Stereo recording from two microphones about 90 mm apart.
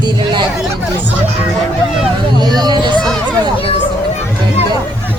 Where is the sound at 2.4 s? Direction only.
50° right (ahead or behind).